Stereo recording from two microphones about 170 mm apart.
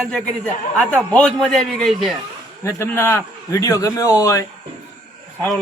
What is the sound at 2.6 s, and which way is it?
A man's voice, 15° left (ahead or behind).